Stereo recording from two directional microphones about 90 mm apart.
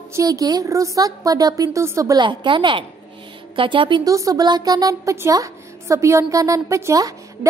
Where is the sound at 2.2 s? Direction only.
60° right (ahead or behind).